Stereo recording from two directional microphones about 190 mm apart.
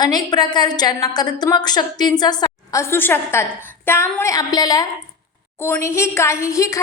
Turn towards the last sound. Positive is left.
turn(degrees=15)  # may be behind; listen again after turning